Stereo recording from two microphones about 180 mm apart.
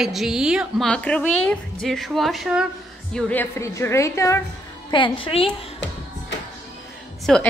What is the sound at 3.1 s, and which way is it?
A woman's voice, 10° left (ahead or behind).